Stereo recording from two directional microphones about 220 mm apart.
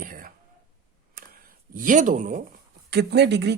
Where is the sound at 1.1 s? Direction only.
40° right (ahead or behind).